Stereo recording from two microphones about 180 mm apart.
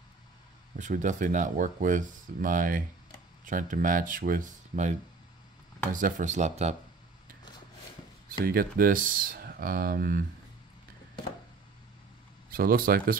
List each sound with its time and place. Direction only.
0.7 s speech: 45° right (ahead or behind)
5.9 s speech: 45° right (ahead or behind)
8.5 s speech: 55° right (ahead or behind)
12.4 s speech: 55° right (ahead or behind)